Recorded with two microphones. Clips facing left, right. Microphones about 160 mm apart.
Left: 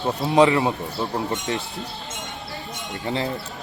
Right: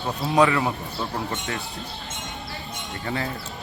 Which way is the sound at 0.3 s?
25° left (ahead or behind).